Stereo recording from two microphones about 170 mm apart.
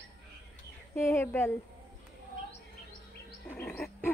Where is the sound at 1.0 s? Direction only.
15° left (ahead or behind).